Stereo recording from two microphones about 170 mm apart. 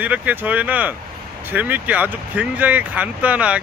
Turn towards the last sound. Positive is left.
turn(degrees=-10)  # may be behind; listen again after turning